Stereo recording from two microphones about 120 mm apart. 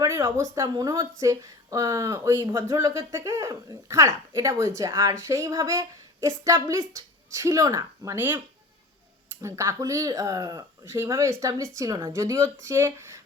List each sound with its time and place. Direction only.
0.0 s speech: 25° right (ahead or behind)
9.4 s speech: 25° right (ahead or behind)